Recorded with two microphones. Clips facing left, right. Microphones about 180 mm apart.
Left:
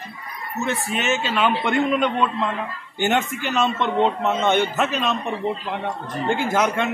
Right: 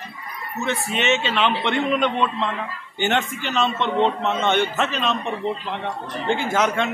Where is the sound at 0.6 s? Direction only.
Centre (ahead or behind).